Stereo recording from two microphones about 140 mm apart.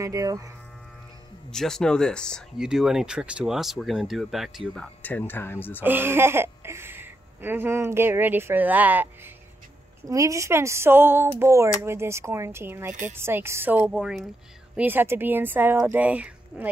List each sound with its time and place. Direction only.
0.0 s speech: 25° right (ahead or behind)
1.5 s speech: 5° left (ahead or behind)
5.0 s speech: 15° left (ahead or behind)
5.8 s speech: 15° right (ahead or behind)
10.0 s speech: 25° right (ahead or behind)